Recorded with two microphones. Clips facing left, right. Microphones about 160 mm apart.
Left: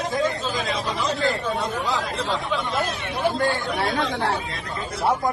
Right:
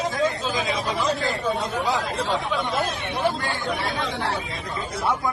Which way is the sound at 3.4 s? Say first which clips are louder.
Left 4 dB; 50° left (ahead or behind).